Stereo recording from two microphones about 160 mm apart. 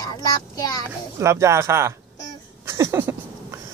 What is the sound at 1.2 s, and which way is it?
Speech, 20° right (ahead or behind).